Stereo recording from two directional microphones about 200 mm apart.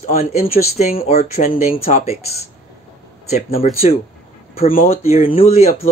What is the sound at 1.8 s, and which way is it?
Speech, 30° left (ahead or behind).